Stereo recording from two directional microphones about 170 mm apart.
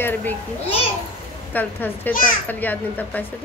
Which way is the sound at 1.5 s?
10° left (ahead or behind).